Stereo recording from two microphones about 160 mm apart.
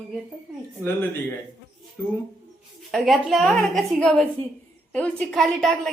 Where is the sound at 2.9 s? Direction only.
Centre (ahead or behind).